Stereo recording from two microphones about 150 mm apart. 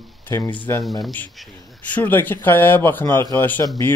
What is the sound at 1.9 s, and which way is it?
Speech, 15° left (ahead or behind).